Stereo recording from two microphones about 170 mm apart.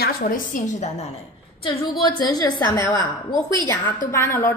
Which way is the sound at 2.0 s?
25° left (ahead or behind).